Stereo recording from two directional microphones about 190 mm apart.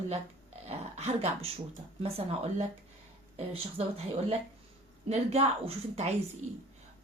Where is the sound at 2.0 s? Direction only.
30° right (ahead or behind).